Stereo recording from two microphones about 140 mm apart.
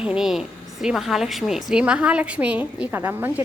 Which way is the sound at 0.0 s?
5° right (ahead or behind).